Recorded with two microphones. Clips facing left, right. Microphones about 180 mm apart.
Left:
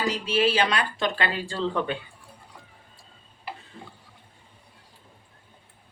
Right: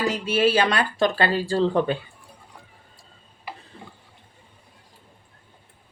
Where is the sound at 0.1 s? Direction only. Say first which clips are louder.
Right 2 dB; 45° right (ahead or behind).